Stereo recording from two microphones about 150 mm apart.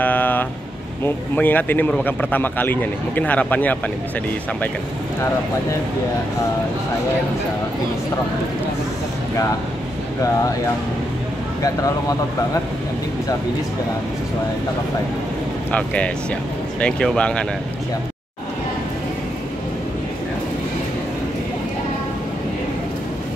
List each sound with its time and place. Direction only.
0.0 s vehicle: 10° left (ahead or behind)
1.0 s speech: 10° left (ahead or behind)
11.6 s speech: 25° left (ahead or behind)
15.7 s speech: 10° left (ahead or behind)